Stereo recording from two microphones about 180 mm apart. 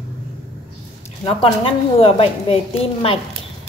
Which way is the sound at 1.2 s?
30° left (ahead or behind).